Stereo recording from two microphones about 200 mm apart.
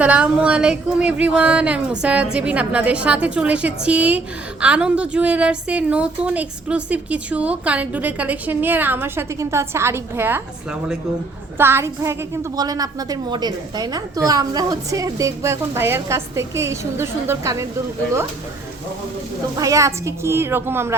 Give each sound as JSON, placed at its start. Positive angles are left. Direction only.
{"t": 0.0, "sound": "a woman's voice", "side_deg": -5}
{"t": 11.5, "sound": "a woman's voice", "side_deg": -10}
{"t": 19.5, "sound": "a woman's voice", "side_deg": -15}